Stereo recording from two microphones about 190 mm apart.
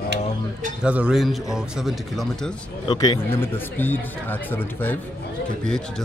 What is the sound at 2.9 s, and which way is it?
Speech, 25° left (ahead or behind).